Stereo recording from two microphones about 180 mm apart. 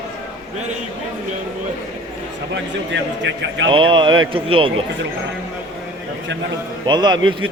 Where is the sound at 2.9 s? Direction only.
80° right.